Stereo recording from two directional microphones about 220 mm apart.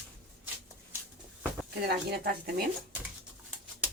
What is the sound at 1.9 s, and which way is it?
Speech, 45° right (ahead or behind).